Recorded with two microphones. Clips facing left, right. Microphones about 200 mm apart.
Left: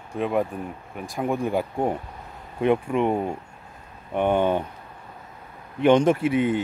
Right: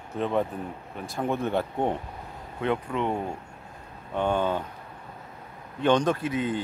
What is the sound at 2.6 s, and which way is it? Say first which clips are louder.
Speech: left 6 dB; 20° left (ahead or behind).